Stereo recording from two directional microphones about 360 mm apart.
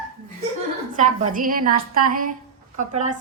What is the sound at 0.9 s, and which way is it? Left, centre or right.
A woman's voice, right.